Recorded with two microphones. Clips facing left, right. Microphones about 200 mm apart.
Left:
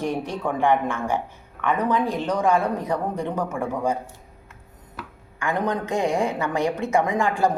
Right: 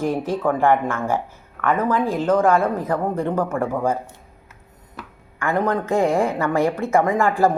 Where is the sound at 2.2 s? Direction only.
50° right (ahead or behind).